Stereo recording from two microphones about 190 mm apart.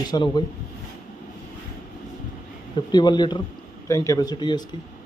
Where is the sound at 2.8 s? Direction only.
25° left (ahead or behind).